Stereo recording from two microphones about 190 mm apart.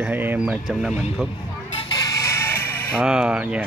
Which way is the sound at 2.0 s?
15° left (ahead or behind).